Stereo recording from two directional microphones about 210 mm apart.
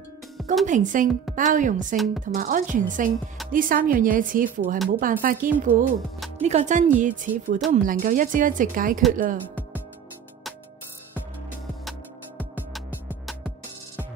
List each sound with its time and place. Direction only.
0.7 s speech: 35° right (ahead or behind)
6.1 s music: centre (ahead or behind)
6.4 s speech: 35° right (ahead or behind)
12.4 s music: 5° left (ahead or behind)